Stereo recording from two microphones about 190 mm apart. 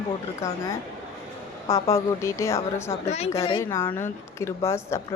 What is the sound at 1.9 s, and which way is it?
Speech, 15° left (ahead or behind).